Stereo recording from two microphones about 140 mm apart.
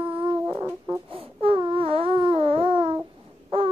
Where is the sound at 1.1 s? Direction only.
40° right (ahead or behind).